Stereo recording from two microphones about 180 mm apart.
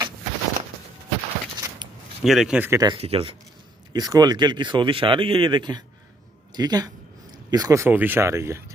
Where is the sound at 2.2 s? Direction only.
Centre (ahead or behind).